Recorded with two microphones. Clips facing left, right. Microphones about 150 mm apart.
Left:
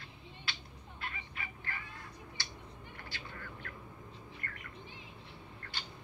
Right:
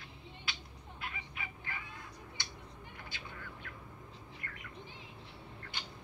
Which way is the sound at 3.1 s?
15° right (ahead or behind).